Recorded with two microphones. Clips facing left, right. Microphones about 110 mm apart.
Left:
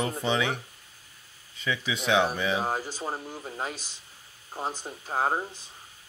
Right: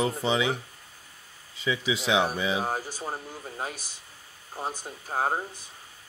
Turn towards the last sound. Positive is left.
turn(degrees=5)  # may be behind; listen again after turning